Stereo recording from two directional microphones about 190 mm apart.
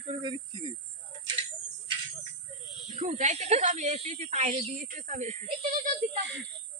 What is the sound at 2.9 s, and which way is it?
Speech, 40° right (ahead or behind).